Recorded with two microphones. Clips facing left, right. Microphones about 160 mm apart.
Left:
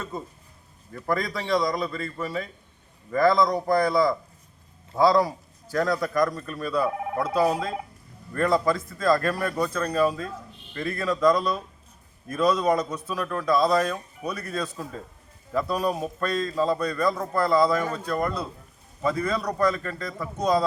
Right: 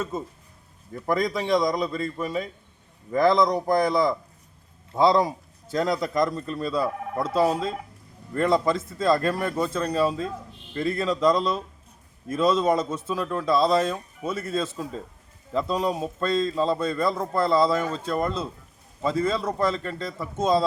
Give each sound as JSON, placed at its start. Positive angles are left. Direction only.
{"t": 0.1, "sound": "a man's voice", "side_deg": -20}
{"t": 8.3, "sound": "a man's voice", "side_deg": -25}